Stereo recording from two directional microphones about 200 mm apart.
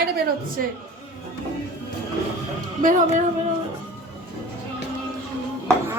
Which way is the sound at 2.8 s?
40° right (ahead or behind).